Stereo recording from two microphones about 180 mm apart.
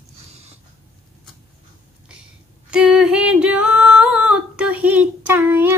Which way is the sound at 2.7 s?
5° right (ahead or behind).